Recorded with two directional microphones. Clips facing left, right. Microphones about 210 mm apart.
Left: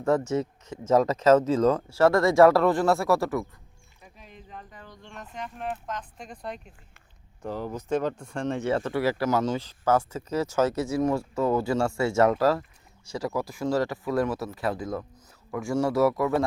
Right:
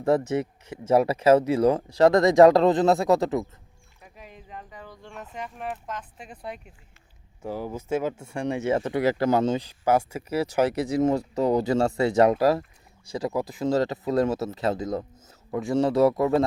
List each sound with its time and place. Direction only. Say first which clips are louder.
0.0 s speech: right 1 dB; 15° right (ahead or behind)
4.0 s speech: right 2 dB; 5° right (ahead or behind); by 9.6 s 25° right (ahead or behind)
9.6 s speech: right 1 dB; 10° right (ahead or behind)